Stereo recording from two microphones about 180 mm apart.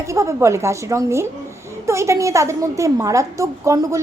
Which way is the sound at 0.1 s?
15° right (ahead or behind).